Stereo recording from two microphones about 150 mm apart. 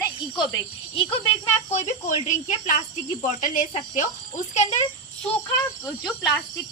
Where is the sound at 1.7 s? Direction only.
50° left (ahead or behind).